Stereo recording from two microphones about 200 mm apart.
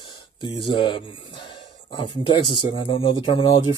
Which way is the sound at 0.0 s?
25° left (ahead or behind).